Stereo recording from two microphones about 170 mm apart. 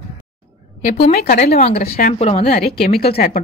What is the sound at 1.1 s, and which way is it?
Speech, 50° left (ahead or behind).